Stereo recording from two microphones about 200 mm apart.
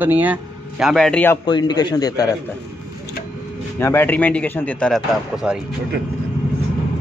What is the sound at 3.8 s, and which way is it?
A man's voice, 10° left (ahead or behind).